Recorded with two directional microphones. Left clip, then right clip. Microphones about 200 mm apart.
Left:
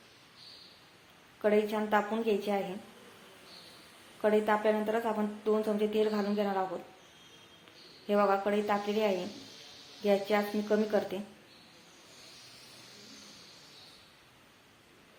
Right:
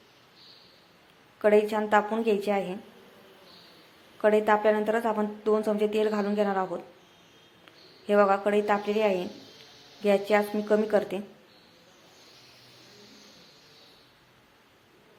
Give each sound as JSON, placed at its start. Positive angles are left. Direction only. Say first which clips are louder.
{"t": 1.4, "sound": "speech", "louder": "right 6 dB", "side_deg": -25}
{"t": 4.2, "sound": "speech", "louder": "right 5 dB", "side_deg": -25}
{"t": 8.0, "sound": "speech", "louder": "right 5 dB", "side_deg": -25}